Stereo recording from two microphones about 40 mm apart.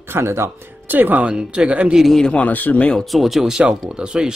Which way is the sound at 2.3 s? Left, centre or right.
Left.